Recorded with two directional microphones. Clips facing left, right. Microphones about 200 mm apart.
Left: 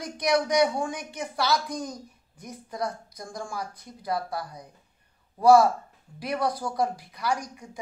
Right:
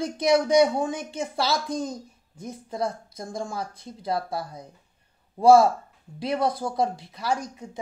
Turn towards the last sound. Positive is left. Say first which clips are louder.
# right 1 dB
turn(degrees=-25)  # may be behind; listen again after turning